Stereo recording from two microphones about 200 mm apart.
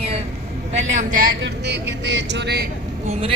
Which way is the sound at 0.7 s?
35° right (ahead or behind).